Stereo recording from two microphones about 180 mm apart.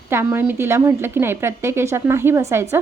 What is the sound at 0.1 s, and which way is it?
A woman's voice, 10° right (ahead or behind).